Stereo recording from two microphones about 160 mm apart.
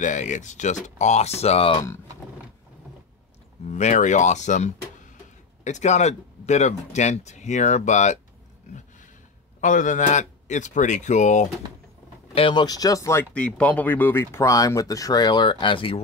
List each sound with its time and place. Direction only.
0.0 s speech: 50° left (ahead or behind)
3.6 s speech: 50° left (ahead or behind)
12.4 s speech: 30° left (ahead or behind)